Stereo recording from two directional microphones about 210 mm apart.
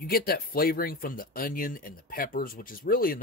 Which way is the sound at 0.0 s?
45° left (ahead or behind).